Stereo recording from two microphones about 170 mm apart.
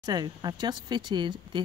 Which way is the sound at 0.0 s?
25° right (ahead or behind).